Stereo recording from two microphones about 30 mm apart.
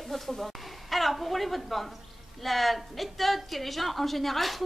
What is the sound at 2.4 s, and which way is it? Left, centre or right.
A woman's voice, centre.